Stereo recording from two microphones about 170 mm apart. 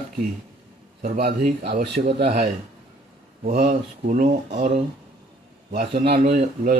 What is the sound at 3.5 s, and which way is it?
Speech, 60° right (ahead or behind).